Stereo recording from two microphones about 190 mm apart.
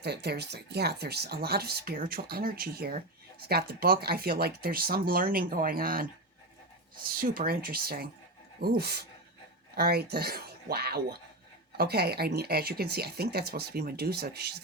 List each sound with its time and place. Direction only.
0.0 s speech: 60° right (ahead or behind)
7.2 s speech: 50° right (ahead or behind)